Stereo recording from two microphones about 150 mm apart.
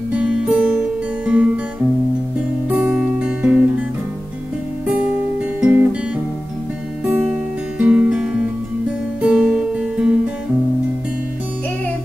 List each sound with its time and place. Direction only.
0.2 s music: 5° right (ahead or behind)
1.2 s guitar: 10° right (ahead or behind)
2.8 s guitar: 10° right (ahead or behind)
5.6 s guitar: 15° right (ahead or behind)
7.8 s music: 5° right (ahead or behind)
9.2 s guitar: 5° right (ahead or behind)